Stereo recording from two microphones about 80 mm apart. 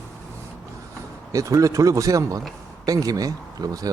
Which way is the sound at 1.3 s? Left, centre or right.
Right.